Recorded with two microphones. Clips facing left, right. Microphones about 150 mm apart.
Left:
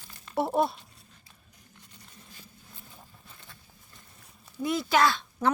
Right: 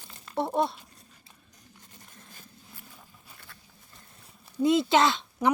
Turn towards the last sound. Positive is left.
turn(degrees=-15)  # may be behind; listen again after turning